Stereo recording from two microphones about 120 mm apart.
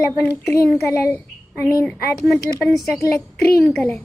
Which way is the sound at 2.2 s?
Centre (ahead or behind).